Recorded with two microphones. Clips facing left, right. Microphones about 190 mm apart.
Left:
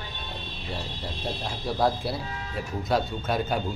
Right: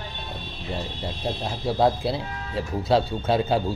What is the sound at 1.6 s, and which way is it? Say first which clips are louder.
Speech: right 4 dB; 25° right (ahead or behind).